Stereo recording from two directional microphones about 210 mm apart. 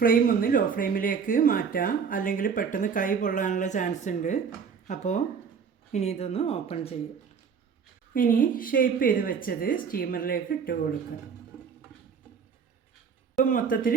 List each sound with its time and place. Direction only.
0.0 s a woman's voice: 40° left (ahead or behind)
8.1 s a woman's voice: 40° left (ahead or behind)
13.4 s speech: 40° left (ahead or behind)